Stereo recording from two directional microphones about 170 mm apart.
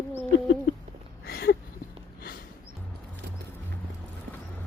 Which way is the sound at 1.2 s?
65° left (ahead or behind).